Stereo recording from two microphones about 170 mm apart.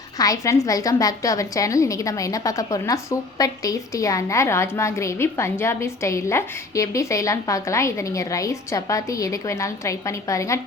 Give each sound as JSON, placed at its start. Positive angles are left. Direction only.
{"t": 0.2, "sound": "a woman's voice", "side_deg": 20}